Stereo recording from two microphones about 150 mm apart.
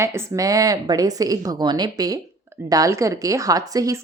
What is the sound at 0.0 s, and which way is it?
Speech, 20° right (ahead or behind).